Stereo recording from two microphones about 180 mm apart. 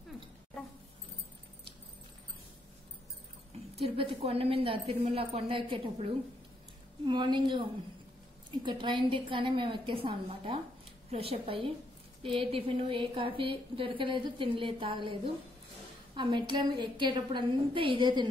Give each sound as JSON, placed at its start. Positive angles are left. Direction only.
{"t": 3.7, "sound": "a woman's voice", "side_deg": -30}